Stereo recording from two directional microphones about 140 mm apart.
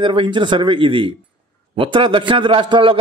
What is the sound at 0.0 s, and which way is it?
A man's voice, 35° right (ahead or behind).